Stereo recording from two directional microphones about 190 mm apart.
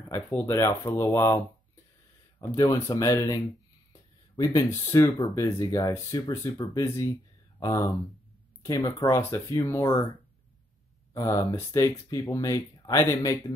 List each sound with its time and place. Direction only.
0.1 s speech: 10° left (ahead or behind)
4.4 s speech: 15° left (ahead or behind)
11.1 s speech: 15° left (ahead or behind)